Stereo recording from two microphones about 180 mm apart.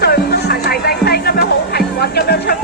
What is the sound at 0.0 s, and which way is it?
Music, 60° left (ahead or behind).